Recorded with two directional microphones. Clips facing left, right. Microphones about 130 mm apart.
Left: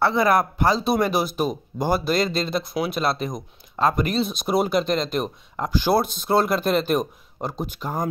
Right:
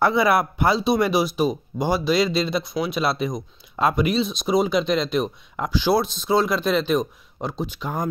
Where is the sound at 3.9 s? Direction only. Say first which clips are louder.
Right 2 dB; 45° left (ahead or behind).